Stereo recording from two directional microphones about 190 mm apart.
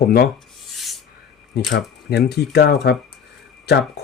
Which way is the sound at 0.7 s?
Centre (ahead or behind).